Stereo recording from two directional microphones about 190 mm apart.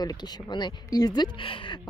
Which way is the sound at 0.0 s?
20° left (ahead or behind).